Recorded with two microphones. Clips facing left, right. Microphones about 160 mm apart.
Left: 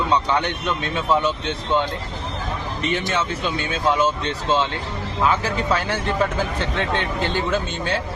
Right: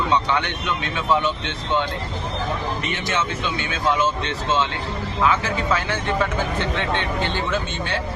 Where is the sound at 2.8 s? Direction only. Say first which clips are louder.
Left 6 dB; 35° left (ahead or behind).